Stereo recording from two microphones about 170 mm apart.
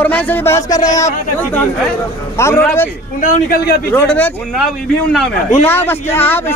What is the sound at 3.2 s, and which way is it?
Speech, 55° left (ahead or behind).